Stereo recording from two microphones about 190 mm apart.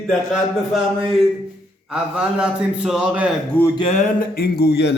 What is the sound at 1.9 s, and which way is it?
A man's voice, 5° right (ahead or behind).